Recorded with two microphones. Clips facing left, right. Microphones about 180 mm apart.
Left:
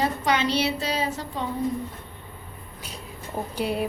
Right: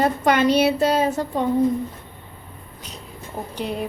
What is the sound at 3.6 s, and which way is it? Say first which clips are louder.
Speech: left 1 dB; 10° left (ahead or behind).